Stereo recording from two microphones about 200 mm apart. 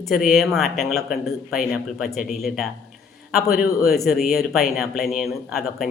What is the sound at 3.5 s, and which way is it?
Speech, 50° left (ahead or behind).